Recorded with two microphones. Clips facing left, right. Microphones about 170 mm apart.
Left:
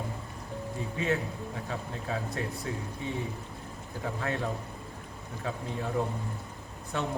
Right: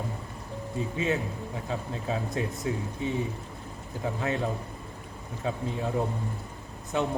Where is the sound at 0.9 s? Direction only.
20° right (ahead or behind).